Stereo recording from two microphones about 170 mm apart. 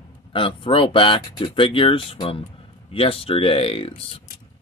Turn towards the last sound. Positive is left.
turn(degrees=35)  # may be behind; listen again after turning